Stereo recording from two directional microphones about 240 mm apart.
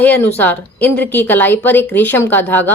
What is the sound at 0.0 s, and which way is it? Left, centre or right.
A woman's voice, centre.